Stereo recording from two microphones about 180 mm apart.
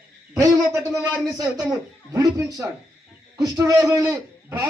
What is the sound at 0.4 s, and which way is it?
A man's voice, 15° right (ahead or behind).